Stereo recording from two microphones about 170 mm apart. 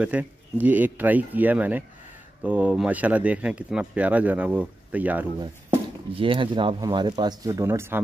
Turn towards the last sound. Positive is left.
turn(degrees=-15)  # may be behind; listen again after turning